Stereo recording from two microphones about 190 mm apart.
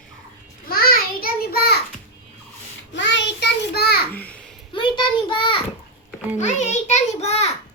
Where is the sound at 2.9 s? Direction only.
70° left (ahead or behind).